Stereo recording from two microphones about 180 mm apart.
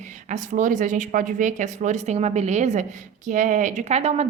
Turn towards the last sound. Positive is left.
turn(degrees=-35)  # may be behind; listen again after turning